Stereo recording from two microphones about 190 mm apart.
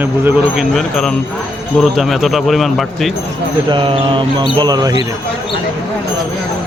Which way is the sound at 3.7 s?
25° right (ahead or behind).